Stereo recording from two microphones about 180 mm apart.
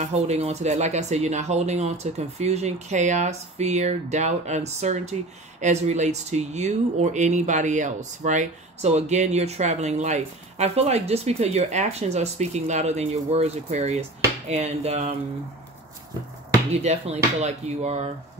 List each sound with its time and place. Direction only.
0.0 s speech: 35° right (ahead or behind)
16.7 s speech: 35° right (ahead or behind)